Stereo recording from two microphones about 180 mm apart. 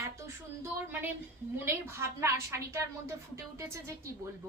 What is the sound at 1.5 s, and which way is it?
A woman's voice, 15° right (ahead or behind).